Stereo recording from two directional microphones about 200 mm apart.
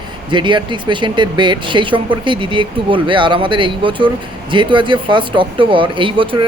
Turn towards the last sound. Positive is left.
turn(degrees=-25)  # may be behind; listen again after turning